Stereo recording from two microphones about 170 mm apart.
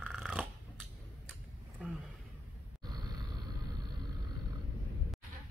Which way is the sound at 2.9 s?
25° right (ahead or behind).